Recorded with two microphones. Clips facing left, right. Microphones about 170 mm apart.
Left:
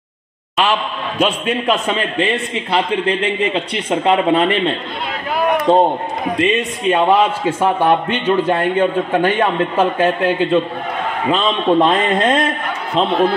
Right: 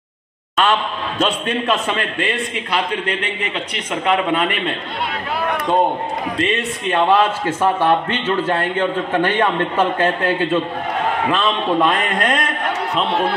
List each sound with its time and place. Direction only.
0.6 s a man's voice: 10° left (ahead or behind); by 4.7 s 30° left (ahead or behind)
6.3 s a man's voice: 15° left (ahead or behind)